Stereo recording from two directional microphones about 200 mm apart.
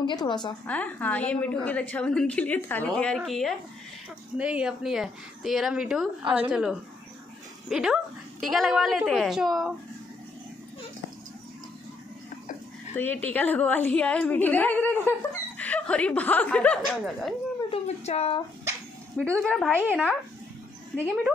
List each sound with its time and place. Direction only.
0.0 s a woman's voice: 20° left (ahead or behind)
0.7 s a woman's voice: 5° left (ahead or behind)
12.9 s a woman's voice: 10° left (ahead or behind)
17.6 s cat: 30° left (ahead or behind)
19.1 s a woman's voice: 5° left (ahead or behind)
19.8 s speech: 10° right (ahead or behind)
20.9 s a woman's voice: 5° left (ahead or behind)